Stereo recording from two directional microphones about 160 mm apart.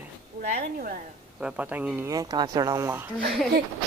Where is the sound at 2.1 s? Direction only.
25° right (ahead or behind).